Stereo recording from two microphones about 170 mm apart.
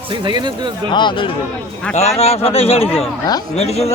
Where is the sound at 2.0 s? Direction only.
40° left (ahead or behind).